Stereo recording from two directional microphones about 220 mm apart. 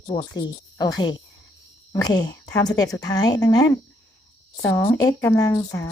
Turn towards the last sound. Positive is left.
turn(degrees=15)  # may be behind; listen again after turning